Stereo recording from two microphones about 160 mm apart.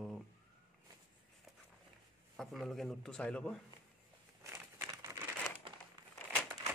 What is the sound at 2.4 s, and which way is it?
A man's voice, centre (ahead or behind).